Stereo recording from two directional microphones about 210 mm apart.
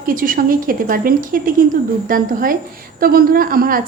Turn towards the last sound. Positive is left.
turn(degrees=-45)  # may be behind; listen again after turning